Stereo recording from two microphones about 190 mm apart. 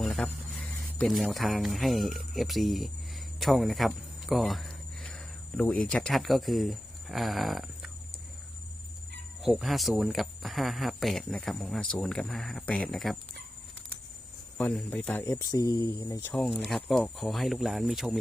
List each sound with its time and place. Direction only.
0.0 s speech: centre (ahead or behind)
9.4 s speech: centre (ahead or behind)
14.6 s speech: 5° left (ahead or behind)
16.3 s speech: centre (ahead or behind)